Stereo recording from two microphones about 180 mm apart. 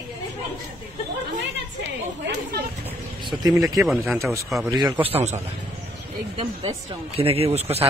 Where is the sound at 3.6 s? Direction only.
Centre (ahead or behind).